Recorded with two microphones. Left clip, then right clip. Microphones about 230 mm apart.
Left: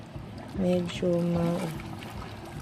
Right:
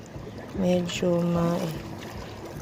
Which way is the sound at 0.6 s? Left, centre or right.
Centre.